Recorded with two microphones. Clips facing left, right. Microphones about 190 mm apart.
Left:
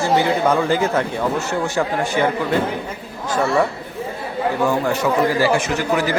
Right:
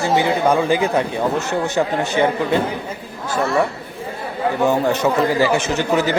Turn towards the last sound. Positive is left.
turn(degrees=-25)  # may be behind; listen again after turning